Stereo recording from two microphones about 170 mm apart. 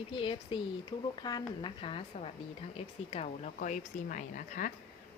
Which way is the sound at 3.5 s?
50° left (ahead or behind).